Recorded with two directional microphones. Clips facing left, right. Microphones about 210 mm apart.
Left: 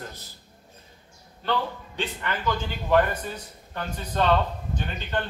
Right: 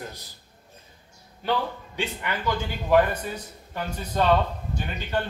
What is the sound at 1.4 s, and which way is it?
A man's voice, 10° right (ahead or behind).